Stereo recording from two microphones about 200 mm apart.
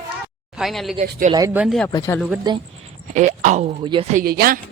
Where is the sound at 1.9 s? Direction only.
20° left (ahead or behind).